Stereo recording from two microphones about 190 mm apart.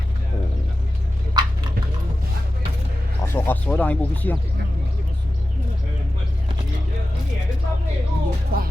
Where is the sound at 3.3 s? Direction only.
10° left (ahead or behind).